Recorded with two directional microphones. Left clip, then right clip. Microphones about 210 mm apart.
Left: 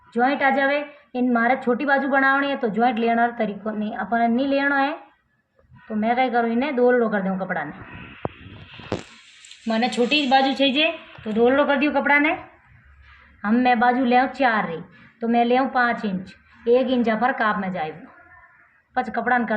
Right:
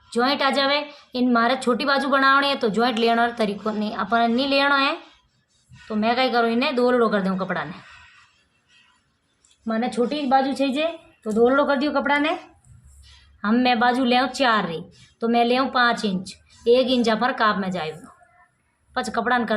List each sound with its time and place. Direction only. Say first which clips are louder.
0.2 s a woman's voice: left 1 dB; 35° right (ahead or behind)
6.0 s a woman's voice: even; 35° right (ahead or behind)
9.6 s speech: left 2 dB; 5° right (ahead or behind)
11.3 s a woman's voice: even; 30° right (ahead or behind)
13.4 s a woman's voice: left 1 dB; 40° right (ahead or behind)
19.1 s a woman's voice: right 1 dB; 40° right (ahead or behind)